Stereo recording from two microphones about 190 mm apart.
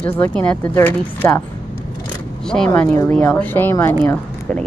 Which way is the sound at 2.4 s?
5° left (ahead or behind).